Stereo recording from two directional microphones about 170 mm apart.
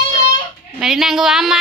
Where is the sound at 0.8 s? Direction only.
Centre (ahead or behind).